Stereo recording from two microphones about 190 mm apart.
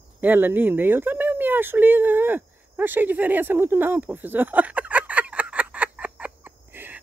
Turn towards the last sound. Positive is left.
turn(degrees=-10)  # may be behind; listen again after turning